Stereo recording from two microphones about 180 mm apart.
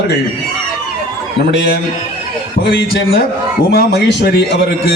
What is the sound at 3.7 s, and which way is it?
Speech, 65° left (ahead or behind).